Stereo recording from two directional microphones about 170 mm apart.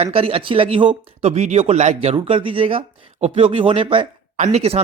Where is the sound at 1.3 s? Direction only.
40° right (ahead or behind).